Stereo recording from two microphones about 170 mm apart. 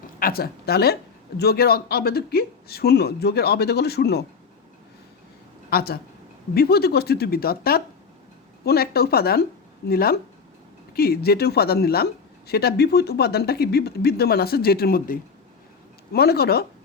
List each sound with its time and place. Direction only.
0.2 s speech: 60° left (ahead or behind)
5.7 s speech: 65° left (ahead or behind)